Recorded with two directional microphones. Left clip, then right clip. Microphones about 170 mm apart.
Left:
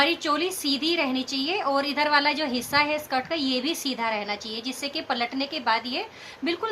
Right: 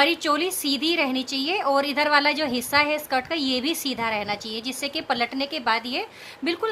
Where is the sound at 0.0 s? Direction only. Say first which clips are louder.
Right 2 dB; 60° right (ahead or behind).